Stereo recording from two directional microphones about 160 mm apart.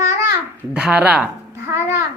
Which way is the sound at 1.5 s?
15° right (ahead or behind).